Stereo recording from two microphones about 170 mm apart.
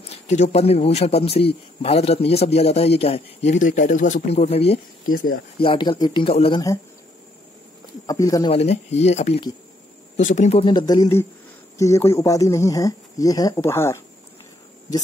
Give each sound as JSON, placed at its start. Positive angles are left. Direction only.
{"t": 0.1, "sound": "a man's voice", "side_deg": 40}
{"t": 8.1, "sound": "speech", "side_deg": 20}
{"t": 8.5, "sound": "a man's voice", "side_deg": 40}
{"t": 10.6, "sound": "speech", "side_deg": 25}